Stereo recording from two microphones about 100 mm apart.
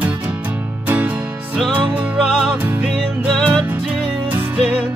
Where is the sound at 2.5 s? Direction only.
20° right (ahead or behind).